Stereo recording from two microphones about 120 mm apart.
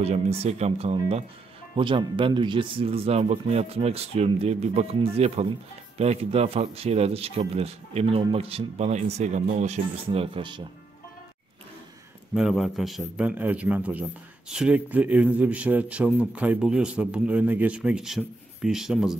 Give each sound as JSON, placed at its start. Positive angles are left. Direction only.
{"t": 0.0, "sound": "speech", "side_deg": -60}
{"t": 1.8, "sound": "speech", "side_deg": -45}
{"t": 12.4, "sound": "a man's voice", "side_deg": 0}
{"t": 13.2, "sound": "a man's voice", "side_deg": -10}